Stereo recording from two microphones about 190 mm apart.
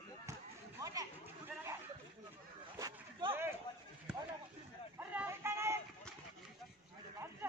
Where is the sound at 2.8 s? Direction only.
20° right (ahead or behind).